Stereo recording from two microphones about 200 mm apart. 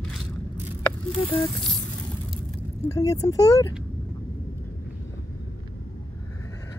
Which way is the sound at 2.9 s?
15° left (ahead or behind).